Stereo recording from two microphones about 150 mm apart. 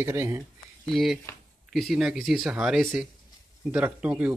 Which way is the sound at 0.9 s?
Centre (ahead or behind).